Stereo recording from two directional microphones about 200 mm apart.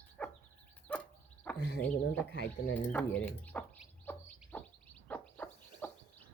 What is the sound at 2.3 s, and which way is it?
Speech, 60° left (ahead or behind).